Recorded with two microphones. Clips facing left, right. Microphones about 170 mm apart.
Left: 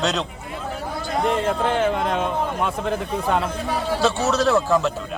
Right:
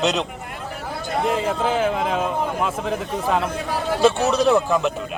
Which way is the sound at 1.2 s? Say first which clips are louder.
Left 1 dB; centre (ahead or behind).